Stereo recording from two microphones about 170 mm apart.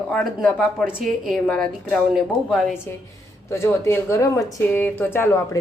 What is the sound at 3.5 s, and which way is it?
Speech, 15° left (ahead or behind).